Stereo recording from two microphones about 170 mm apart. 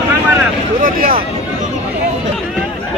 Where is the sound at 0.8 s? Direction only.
55° right (ahead or behind).